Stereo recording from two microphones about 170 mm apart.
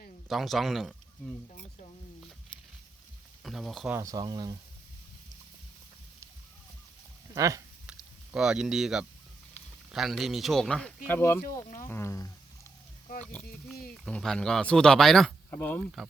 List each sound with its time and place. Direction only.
0.3 s speech: centre (ahead or behind)
3.4 s speech: centre (ahead or behind)
3.9 s speech: 20° right (ahead or behind)
7.3 s speech: 20° right (ahead or behind)
7.9 s a sound: 5° right (ahead or behind)
9.9 s speech: centre (ahead or behind)
11.9 s a sound: 15° left (ahead or behind)
13.2 s speech: 5° left (ahead or behind)